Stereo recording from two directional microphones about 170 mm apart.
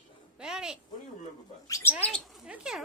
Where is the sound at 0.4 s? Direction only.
5° right (ahead or behind).